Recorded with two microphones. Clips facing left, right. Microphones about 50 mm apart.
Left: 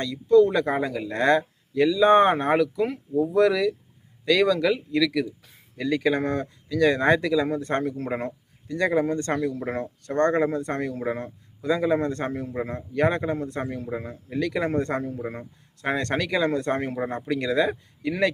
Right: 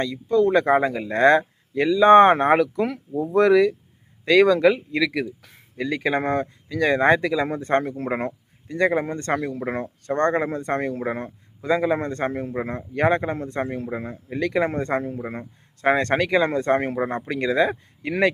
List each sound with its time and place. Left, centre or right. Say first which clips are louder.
0.0 s speech: left 3 dB; right
0.4 s speech: right 5 dB; right
5.0 s speech: right 1 dB; right
5.4 s a sound: right 4 dB; right
5.7 s speech: even; right
7.6 s speech: right 4 dB; right
12.0 s speech: right 2 dB; right
13.0 s speech: right 2 dB; right
16.1 s speech: right 4 dB; right
16.5 s speech: right 4 dB; right
17.3 s speech: right 2 dB; right